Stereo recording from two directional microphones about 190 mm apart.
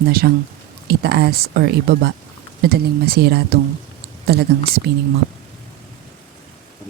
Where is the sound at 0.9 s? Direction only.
55° right (ahead or behind).